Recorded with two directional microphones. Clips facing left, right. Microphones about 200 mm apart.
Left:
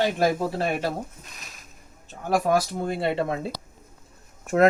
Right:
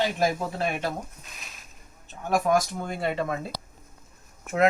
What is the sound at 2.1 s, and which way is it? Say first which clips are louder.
Speech: left 1 dB; 35° left (ahead or behind).